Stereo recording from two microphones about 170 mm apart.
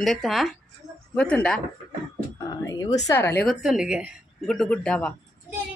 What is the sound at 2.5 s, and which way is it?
Speech, 20° left (ahead or behind).